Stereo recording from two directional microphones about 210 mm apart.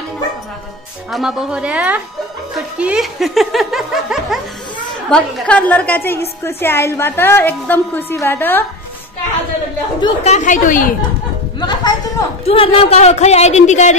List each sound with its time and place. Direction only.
1.1 s a woman's voice: 5° right (ahead or behind)
9.9 s speech: 20° left (ahead or behind)
10.3 s speech: 35° left (ahead or behind)
11.6 s speech: 20° left (ahead or behind)